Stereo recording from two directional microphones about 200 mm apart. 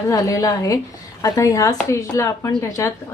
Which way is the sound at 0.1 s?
15° left (ahead or behind).